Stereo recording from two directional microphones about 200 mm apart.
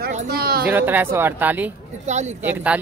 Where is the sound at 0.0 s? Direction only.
45° right (ahead or behind).